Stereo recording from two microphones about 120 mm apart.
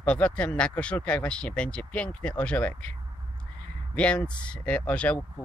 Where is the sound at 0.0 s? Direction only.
10° left (ahead or behind).